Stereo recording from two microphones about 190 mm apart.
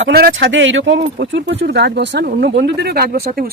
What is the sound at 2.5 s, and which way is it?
Speech, 65° right (ahead or behind).